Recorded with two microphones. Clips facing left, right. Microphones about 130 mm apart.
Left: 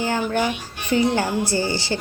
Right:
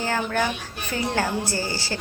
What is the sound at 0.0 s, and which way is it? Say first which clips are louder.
A woman's voice: left 3 dB; 15° left (ahead or behind).